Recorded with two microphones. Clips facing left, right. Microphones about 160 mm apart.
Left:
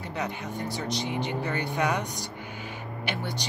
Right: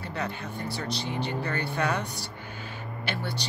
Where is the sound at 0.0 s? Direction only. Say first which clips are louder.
Left 1 dB; 15° left (ahead or behind).